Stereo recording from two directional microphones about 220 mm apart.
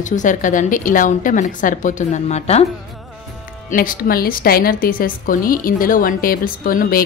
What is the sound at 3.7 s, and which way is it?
Speech, 40° left (ahead or behind).